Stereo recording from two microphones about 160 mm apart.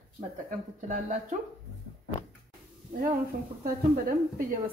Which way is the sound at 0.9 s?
50° right (ahead or behind).